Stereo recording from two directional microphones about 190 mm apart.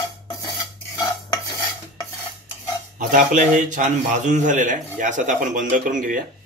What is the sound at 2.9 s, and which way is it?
A man's voice, 40° right (ahead or behind).